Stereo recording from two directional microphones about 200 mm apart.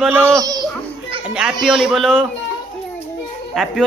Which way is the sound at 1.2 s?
5° right (ahead or behind).